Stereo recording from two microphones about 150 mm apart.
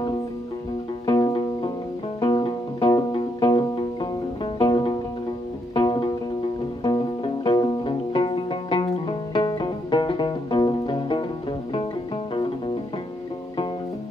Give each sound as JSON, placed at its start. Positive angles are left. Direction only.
{"t": 1.0, "sound": "music", "side_deg": 30}
{"t": 7.4, "sound": "music", "side_deg": 30}